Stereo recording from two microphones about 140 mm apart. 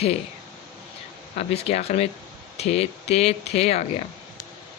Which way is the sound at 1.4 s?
50° left (ahead or behind).